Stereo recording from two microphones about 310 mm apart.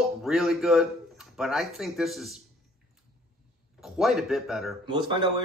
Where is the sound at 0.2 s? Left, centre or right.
Centre.